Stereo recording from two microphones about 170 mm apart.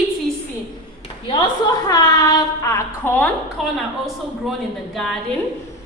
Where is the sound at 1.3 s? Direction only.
25° left (ahead or behind).